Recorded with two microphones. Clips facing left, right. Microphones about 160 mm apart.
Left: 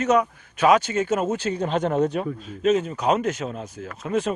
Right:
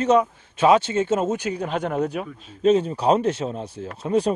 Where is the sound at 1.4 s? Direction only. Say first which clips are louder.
Left 2 dB; 10° right (ahead or behind).